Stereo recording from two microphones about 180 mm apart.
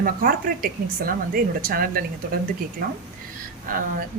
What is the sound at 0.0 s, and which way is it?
A woman's voice, 50° right (ahead or behind).